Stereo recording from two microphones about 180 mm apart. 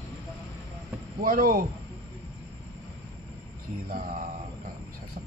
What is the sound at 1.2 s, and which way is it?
Speech, 50° right (ahead or behind).